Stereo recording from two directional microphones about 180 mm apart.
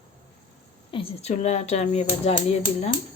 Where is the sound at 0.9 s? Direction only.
35° left (ahead or behind).